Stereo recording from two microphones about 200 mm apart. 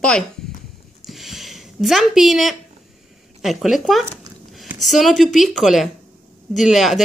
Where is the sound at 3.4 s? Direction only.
Centre (ahead or behind).